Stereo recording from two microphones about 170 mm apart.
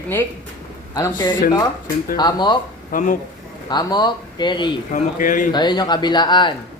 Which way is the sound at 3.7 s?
25° left (ahead or behind).